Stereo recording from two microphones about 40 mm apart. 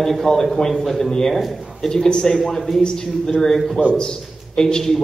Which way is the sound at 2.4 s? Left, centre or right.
Centre.